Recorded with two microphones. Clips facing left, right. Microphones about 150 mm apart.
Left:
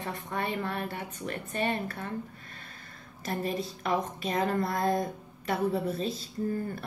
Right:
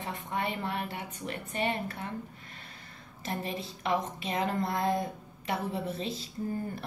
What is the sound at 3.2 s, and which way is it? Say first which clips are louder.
A woman's voice: left 4 dB; 20° right (ahead or behind).